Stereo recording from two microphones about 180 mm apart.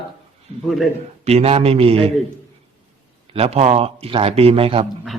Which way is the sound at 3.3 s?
35° right (ahead or behind).